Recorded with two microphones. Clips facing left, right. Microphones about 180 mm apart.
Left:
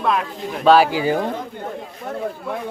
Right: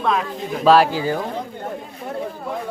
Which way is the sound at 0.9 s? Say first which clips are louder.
Left 2 dB; 15° left (ahead or behind).